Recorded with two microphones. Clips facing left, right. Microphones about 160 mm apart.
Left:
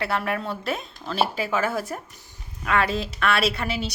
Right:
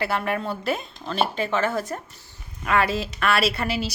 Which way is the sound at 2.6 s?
Centre (ahead or behind).